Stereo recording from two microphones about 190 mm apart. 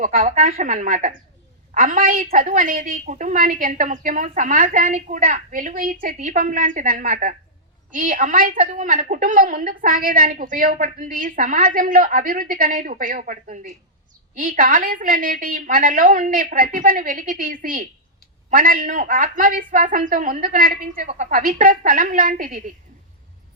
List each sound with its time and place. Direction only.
0.0 s a woman's voice: 45° right (ahead or behind)